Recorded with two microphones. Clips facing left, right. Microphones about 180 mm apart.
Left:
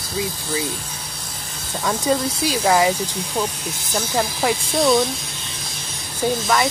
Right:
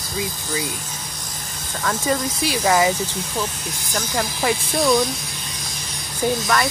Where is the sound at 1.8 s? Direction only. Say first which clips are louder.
Left 2 dB; 10° left (ahead or behind).